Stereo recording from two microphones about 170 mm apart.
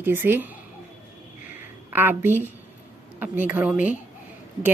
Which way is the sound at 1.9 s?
10° right (ahead or behind).